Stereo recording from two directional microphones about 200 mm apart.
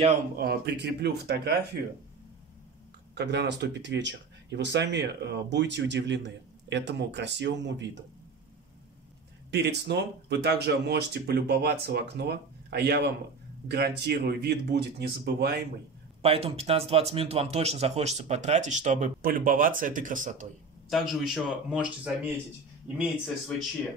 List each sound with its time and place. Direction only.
0.4 s speech: 55° right (ahead or behind)
3.2 s speech: 60° right (ahead or behind)
9.5 s speech: 55° right (ahead or behind)
16.2 s speech: 30° right (ahead or behind)
20.9 s speech: centre (ahead or behind)